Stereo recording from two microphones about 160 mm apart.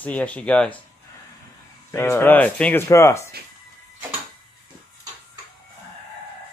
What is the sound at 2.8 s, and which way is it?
Speech, 20° left (ahead or behind).